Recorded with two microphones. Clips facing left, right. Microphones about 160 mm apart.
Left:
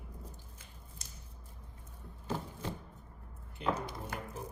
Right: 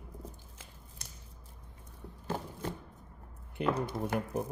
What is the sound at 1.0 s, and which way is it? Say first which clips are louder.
Scissors: right 2 dB; 60° right (ahead or behind).